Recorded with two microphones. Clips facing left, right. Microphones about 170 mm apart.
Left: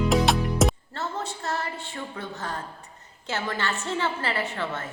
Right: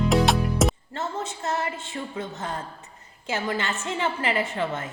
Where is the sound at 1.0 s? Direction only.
20° right (ahead or behind).